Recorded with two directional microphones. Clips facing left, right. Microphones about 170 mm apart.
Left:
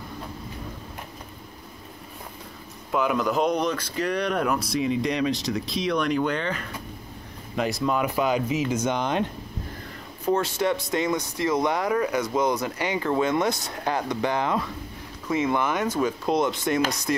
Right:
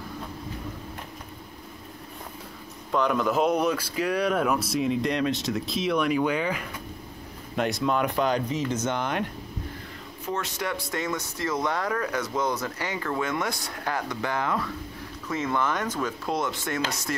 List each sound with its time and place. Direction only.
2.9 s speech: 5° left (ahead or behind)
10.2 s speech: 30° left (ahead or behind); by 17.1 s 15° left (ahead or behind)